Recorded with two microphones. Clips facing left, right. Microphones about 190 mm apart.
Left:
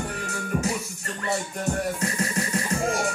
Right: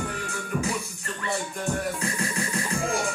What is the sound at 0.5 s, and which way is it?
Music, 30° left (ahead or behind).